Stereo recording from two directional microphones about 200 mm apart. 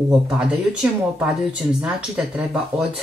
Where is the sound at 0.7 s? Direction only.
5° right (ahead or behind).